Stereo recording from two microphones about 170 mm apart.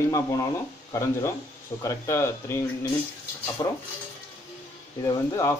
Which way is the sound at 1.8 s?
15° left (ahead or behind).